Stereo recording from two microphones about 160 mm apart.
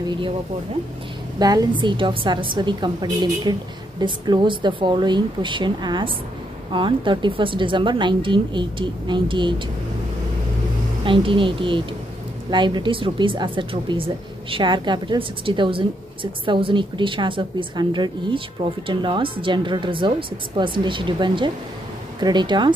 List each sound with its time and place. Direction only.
1.4 s a woman's voice: 25° right (ahead or behind)
11.1 s a woman's voice: 30° right (ahead or behind)